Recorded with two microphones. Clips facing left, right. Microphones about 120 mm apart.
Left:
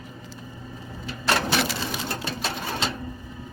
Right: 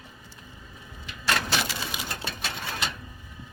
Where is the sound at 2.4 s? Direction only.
30° left (ahead or behind).